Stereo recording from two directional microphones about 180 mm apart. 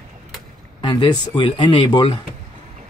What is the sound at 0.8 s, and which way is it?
Speech, 25° left (ahead or behind).